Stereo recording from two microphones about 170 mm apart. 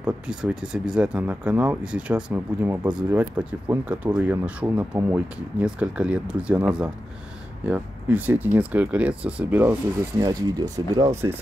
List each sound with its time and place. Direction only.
0.0 s speech: 5° right (ahead or behind)